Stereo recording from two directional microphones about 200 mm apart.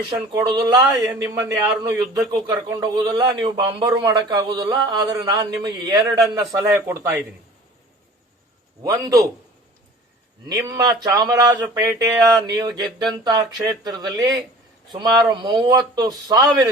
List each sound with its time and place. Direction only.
0.0 s a man's voice: 20° right (ahead or behind)
8.8 s a man's voice: 20° right (ahead or behind)
10.5 s a man's voice: 20° right (ahead or behind)